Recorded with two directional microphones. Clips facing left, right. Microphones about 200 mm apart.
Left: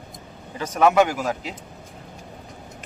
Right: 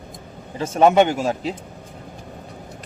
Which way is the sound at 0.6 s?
25° right (ahead or behind).